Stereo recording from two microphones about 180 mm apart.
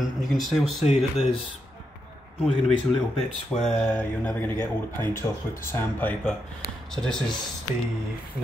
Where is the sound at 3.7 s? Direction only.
10° left (ahead or behind).